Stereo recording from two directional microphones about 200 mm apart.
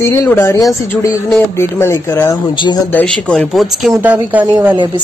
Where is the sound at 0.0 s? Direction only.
15° left (ahead or behind).